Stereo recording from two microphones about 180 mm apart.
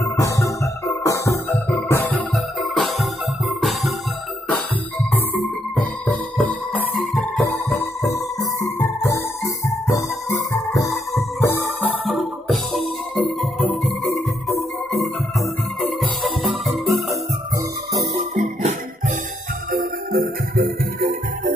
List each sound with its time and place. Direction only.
0.2 s music: 15° left (ahead or behind)
2.3 s music: centre (ahead or behind)
6.0 s music: 5° left (ahead or behind)
7.8 s music: 20° left (ahead or behind)
12.1 s music: centre (ahead or behind)
18.3 s music: 40° right (ahead or behind)
19.7 s music: 55° right (ahead or behind)